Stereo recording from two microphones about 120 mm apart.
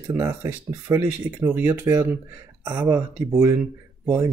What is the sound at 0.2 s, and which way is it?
Speech, 20° right (ahead or behind).